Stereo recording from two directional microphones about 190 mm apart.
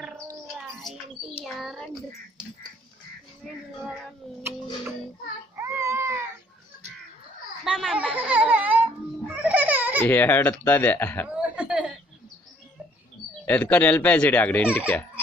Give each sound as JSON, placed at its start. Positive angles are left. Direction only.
{"t": 0.3, "sound": "bird", "side_deg": -15}
{"t": 1.4, "sound": "a child's voice", "side_deg": 0}
{"t": 5.6, "sound": "baby cry", "side_deg": -15}
{"t": 7.6, "sound": "a child's voice", "side_deg": 0}
{"t": 9.3, "sound": "music", "side_deg": -10}
{"t": 10.0, "sound": "speech", "side_deg": 10}
{"t": 11.2, "sound": "chuckle", "side_deg": -5}
{"t": 13.5, "sound": "speech", "side_deg": 10}